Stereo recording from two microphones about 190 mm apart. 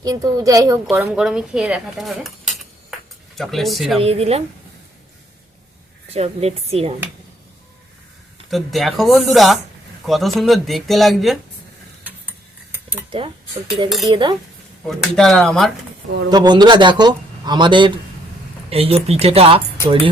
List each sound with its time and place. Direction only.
0.0 s a woman's voice: 20° right (ahead or behind); by 3.9 s centre (ahead or behind)
4.0 s speech: 30° right (ahead or behind)
6.1 s speech: 35° right (ahead or behind)
8.4 s speech: centre (ahead or behind)
13.1 s a man's voice: 30° right (ahead or behind)
14.8 s speech: centre (ahead or behind)
16.3 s a man's voice: 20° right (ahead or behind)